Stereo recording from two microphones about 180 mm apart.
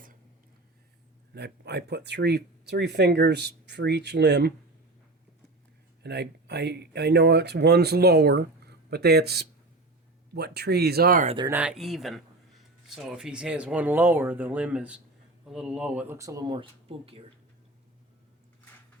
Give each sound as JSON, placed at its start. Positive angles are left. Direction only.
{"t": 1.3, "sound": "speech", "side_deg": -65}
{"t": 6.0, "sound": "speech", "side_deg": -70}
{"t": 11.4, "sound": "speech", "side_deg": -10}